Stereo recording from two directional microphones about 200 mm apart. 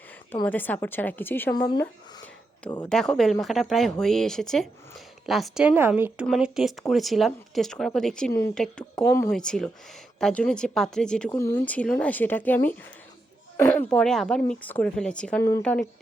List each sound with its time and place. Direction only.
0.4 s speech: 10° left (ahead or behind)
1.5 s speech: 20° left (ahead or behind)
2.8 s a woman's voice: 5° left (ahead or behind)
9.0 s speech: 15° left (ahead or behind)
9.3 s a woman's voice: 5° left (ahead or behind)